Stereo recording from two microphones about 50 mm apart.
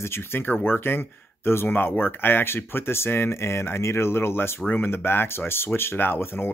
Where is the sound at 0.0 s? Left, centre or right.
Left.